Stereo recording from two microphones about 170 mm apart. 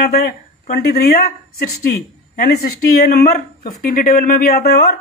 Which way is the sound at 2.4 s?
60° left (ahead or behind).